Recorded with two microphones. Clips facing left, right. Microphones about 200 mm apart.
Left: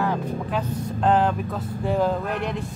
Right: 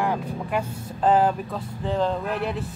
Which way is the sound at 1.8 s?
10° left (ahead or behind).